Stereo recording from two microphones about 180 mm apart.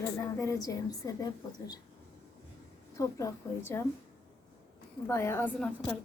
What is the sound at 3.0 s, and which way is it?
Speech, 15° left (ahead or behind).